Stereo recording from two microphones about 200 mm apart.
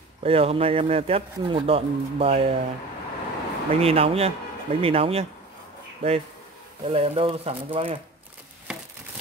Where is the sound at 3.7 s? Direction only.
30° right (ahead or behind).